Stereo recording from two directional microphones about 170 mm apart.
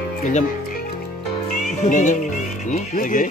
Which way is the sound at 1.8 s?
50° left (ahead or behind).